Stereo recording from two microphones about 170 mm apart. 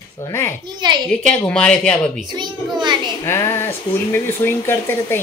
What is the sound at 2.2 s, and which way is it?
Speech, 25° right (ahead or behind).